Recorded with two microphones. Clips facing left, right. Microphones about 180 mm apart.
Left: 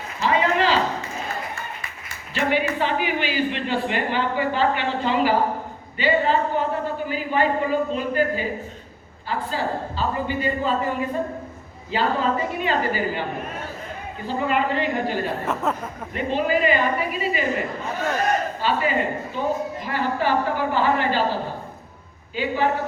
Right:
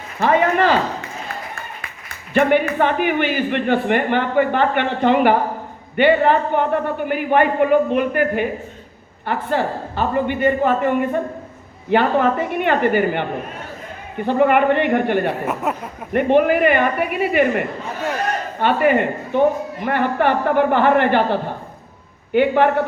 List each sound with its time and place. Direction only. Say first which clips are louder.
0.2 s a sound: right 5 dB; 55° right (ahead or behind)
2.3 s a man's voice: right 7 dB; 55° right (ahead or behind)
15.4 s speech: right 2 dB; 10° right (ahead or behind)
16.1 s a man's voice: right 8 dB; 60° right (ahead or behind)